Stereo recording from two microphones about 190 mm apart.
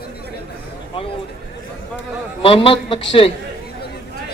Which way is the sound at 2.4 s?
30° left (ahead or behind).